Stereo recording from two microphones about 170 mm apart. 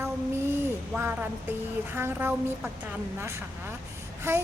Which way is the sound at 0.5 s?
10° right (ahead or behind).